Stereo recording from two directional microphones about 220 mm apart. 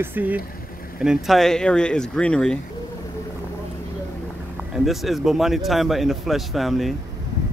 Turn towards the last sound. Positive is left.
turn(degrees=0)  # may be behind; listen again after turning